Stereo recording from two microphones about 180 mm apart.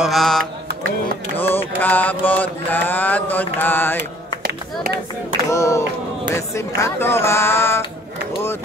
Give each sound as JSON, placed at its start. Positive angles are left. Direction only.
{"t": 0.0, "sound": "mantra", "side_deg": 0}
{"t": 4.4, "sound": "a sound", "side_deg": -65}
{"t": 5.5, "sound": "mantra", "side_deg": 15}